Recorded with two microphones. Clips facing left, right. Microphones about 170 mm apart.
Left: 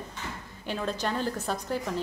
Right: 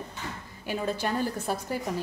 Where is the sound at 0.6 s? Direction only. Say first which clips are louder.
Right 1 dB; 10° right (ahead or behind).